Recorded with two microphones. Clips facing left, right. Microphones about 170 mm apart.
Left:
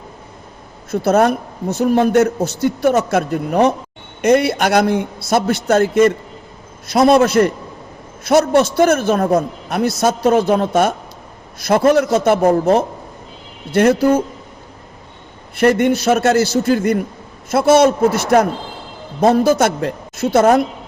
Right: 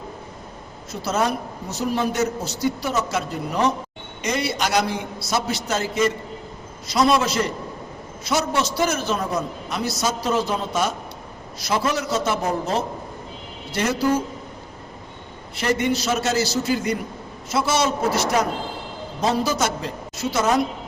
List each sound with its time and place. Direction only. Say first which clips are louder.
0.9 s a man's voice: left 9 dB; 55° left (ahead or behind)
15.5 s a man's voice: left 8 dB; 55° left (ahead or behind)